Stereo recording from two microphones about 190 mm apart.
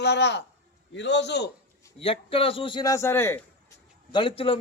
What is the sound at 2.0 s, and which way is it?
A man's voice, 30° left (ahead or behind).